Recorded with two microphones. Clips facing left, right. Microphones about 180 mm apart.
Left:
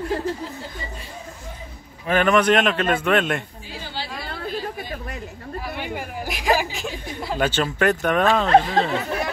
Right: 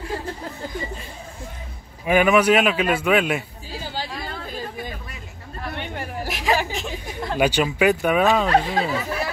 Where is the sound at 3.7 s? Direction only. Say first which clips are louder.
Right 2 dB; 45° right (ahead or behind).